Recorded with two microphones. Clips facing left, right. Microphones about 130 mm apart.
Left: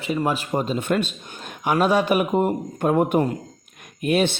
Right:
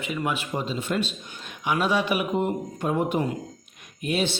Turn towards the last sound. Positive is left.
turn(degrees=55)  # may be behind; listen again after turning